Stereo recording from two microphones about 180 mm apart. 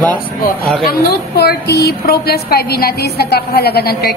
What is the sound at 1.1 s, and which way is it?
A woman's voice, 60° left (ahead or behind).